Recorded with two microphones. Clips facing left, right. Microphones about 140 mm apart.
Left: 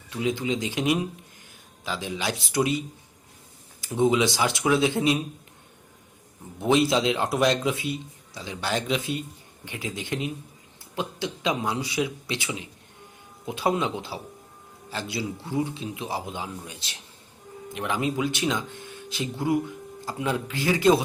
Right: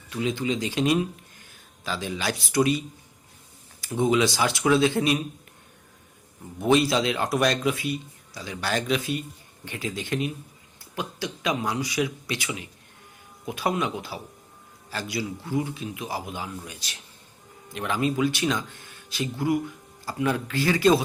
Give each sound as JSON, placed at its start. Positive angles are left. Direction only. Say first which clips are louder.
{"t": 0.1, "sound": "speech", "louder": "even", "side_deg": 20}
{"t": 6.6, "sound": "speech", "louder": "even", "side_deg": 20}